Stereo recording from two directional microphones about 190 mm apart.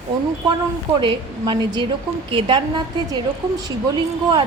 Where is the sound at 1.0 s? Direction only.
25° right (ahead or behind).